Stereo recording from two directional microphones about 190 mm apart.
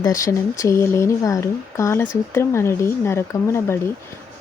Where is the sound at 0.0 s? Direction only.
15° left (ahead or behind).